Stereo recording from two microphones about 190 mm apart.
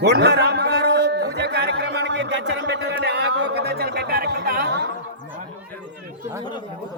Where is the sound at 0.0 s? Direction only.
60° right (ahead or behind).